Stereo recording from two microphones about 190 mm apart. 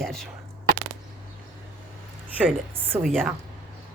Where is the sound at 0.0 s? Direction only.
Centre (ahead or behind).